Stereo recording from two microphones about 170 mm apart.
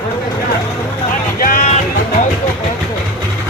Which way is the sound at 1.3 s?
55° left (ahead or behind).